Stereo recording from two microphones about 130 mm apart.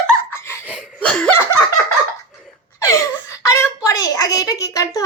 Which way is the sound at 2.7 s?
25° left (ahead or behind).